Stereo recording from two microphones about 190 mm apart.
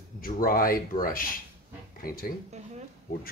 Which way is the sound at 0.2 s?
50° left (ahead or behind).